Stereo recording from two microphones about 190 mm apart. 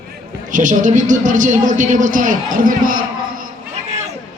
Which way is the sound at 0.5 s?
40° right (ahead or behind).